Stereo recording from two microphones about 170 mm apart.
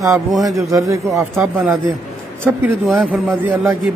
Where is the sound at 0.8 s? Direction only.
20° right (ahead or behind).